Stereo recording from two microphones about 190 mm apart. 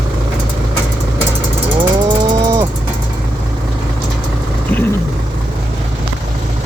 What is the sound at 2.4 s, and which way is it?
Vehicle, 20° right (ahead or behind).